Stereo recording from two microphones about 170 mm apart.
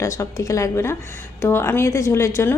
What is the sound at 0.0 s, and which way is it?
Speech, 20° left (ahead or behind).